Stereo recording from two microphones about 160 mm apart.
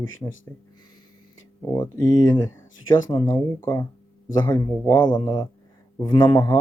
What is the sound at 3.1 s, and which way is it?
Speech, 15° left (ahead or behind).